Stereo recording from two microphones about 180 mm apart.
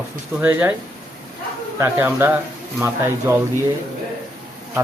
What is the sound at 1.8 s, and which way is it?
Speech, 10° right (ahead or behind).